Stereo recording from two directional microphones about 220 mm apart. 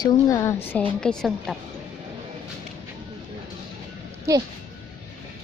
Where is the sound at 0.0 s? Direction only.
15° left (ahead or behind).